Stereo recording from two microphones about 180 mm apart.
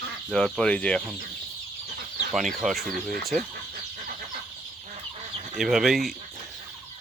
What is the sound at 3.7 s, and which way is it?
Chicken, 50° right (ahead or behind).